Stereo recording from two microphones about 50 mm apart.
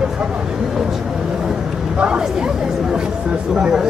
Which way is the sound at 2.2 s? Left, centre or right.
Centre.